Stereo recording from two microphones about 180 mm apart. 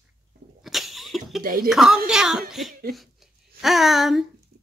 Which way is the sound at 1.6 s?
5° right (ahead or behind).